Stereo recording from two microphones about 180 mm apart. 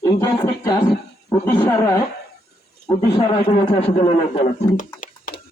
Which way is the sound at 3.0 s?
30° left (ahead or behind).